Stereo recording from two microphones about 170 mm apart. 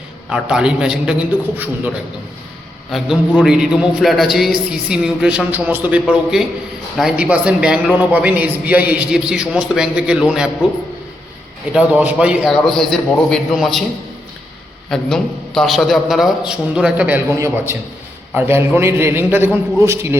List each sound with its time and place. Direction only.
0.3 s a man's voice: 5° right (ahead or behind)
2.9 s a man's voice: centre (ahead or behind)
11.7 s a man's voice: 10° right (ahead or behind)
14.8 s a man's voice: 5° left (ahead or behind); by 20.1 s 15° right (ahead or behind)